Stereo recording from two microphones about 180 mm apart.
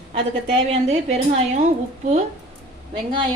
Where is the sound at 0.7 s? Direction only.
35° right (ahead or behind).